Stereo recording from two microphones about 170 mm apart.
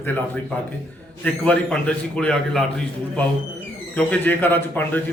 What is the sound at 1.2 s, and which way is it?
A man's voice, 5° left (ahead or behind).